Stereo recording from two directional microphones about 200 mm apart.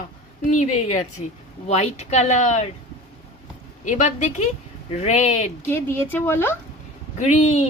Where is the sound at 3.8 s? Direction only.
35° left (ahead or behind).